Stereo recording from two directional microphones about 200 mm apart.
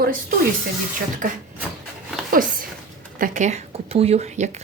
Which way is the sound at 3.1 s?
40° right (ahead or behind).